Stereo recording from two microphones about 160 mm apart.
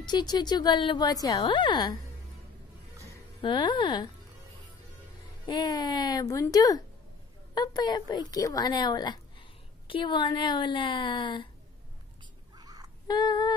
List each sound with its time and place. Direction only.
0.0 s a woman's voice: 25° left (ahead or behind)
3.3 s a woman's voice: 30° left (ahead or behind)
5.5 s a woman's voice: 25° left (ahead or behind)
12.5 s crow: 25° right (ahead or behind)
13.0 s a woman's voice: 25° left (ahead or behind)